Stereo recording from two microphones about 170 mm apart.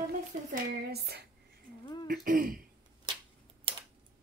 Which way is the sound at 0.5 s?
70° right (ahead or behind).